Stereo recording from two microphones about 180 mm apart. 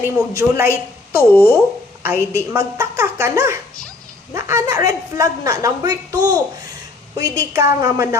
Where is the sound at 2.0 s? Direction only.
15° right (ahead or behind).